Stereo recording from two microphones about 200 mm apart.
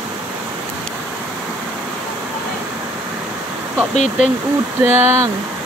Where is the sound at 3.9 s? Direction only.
35° left (ahead or behind).